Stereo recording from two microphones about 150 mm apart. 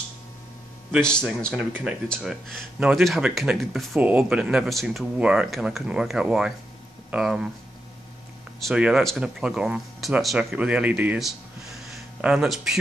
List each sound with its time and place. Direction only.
1.0 s speech: 5° left (ahead or behind)
8.5 s speech: 5° right (ahead or behind)